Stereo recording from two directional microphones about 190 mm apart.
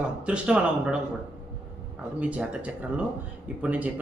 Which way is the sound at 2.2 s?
5° right (ahead or behind).